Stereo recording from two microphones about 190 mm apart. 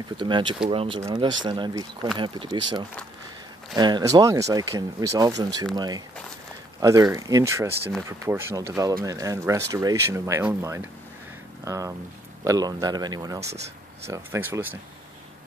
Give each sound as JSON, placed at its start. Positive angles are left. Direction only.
{"t": 0.2, "sound": "speech", "side_deg": -25}